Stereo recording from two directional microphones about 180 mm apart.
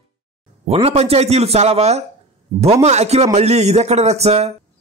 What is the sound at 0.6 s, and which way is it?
Speech, 30° right (ahead or behind).